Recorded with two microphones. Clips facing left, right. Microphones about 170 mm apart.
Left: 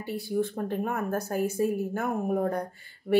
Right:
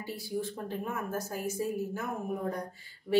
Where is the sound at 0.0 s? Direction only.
60° left (ahead or behind).